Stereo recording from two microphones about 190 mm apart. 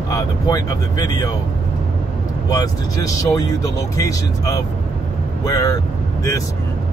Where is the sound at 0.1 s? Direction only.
20° left (ahead or behind).